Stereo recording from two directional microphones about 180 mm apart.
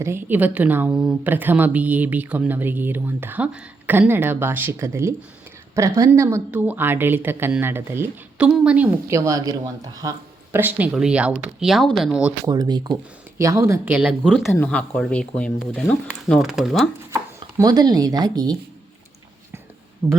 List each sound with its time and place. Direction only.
0.0 s speech: 10° right (ahead or behind)
12.5 s speech: 20° right (ahead or behind); by 16.9 s centre (ahead or behind)
17.6 s speech: 20° right (ahead or behind)
20.0 s speech: 10° right (ahead or behind)